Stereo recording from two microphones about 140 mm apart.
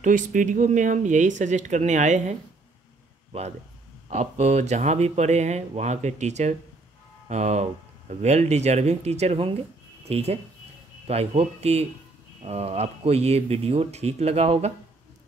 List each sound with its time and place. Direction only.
0.0 s speech: 70° right (ahead or behind)
4.1 s speech: 50° right (ahead or behind)